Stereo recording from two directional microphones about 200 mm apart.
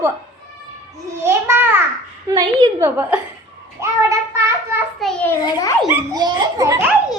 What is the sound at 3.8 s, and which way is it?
Child singing, 15° right (ahead or behind).